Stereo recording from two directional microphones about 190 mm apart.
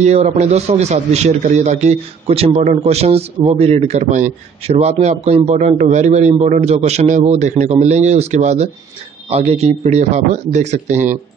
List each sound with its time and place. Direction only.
0.0 s a man's voice: 35° right (ahead or behind)